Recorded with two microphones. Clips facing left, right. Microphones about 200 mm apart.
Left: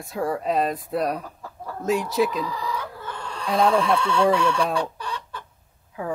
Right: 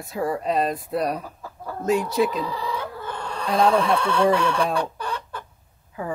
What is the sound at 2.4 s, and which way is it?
Chicken, 30° right (ahead or behind).